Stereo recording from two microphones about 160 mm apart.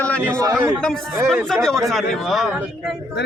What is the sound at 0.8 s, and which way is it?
Speech, centre (ahead or behind).